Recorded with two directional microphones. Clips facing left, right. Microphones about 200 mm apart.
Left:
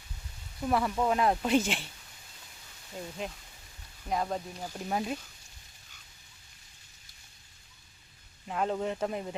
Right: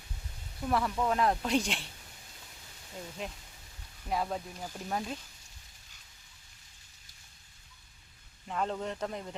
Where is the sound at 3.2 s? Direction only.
Centre (ahead or behind).